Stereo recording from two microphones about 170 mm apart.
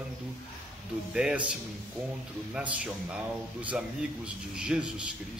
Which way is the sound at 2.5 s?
5° right (ahead or behind).